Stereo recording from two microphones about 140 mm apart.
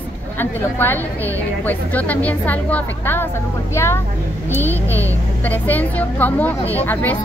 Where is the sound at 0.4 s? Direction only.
15° left (ahead or behind).